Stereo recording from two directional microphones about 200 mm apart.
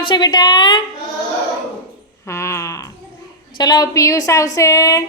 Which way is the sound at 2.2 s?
15° left (ahead or behind).